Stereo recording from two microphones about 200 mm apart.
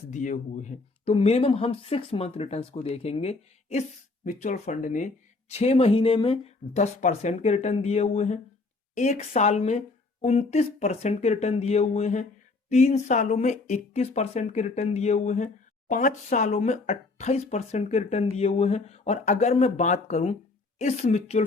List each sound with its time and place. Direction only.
0.1 s speech: 40° left (ahead or behind)